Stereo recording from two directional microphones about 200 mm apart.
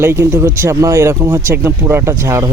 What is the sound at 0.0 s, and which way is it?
Speech, 10° right (ahead or behind).